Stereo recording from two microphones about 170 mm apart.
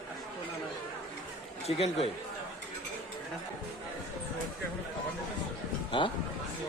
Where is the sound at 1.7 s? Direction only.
35° left (ahead or behind).